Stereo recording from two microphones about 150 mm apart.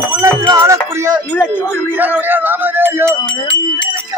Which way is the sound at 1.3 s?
15° left (ahead or behind).